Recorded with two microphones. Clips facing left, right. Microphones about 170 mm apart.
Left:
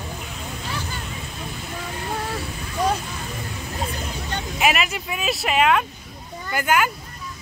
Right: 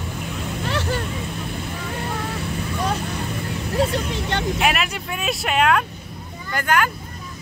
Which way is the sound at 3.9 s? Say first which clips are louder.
Right 6 dB; 75° right (ahead or behind).